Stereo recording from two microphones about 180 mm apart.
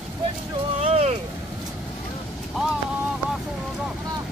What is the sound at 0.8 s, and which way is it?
Vehicle, 35° right (ahead or behind).